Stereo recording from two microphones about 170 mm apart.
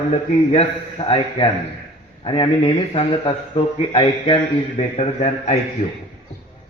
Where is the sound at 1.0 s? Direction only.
30° left (ahead or behind).